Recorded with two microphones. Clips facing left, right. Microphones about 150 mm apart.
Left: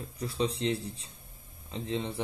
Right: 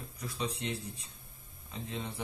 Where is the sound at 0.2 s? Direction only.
30° left (ahead or behind).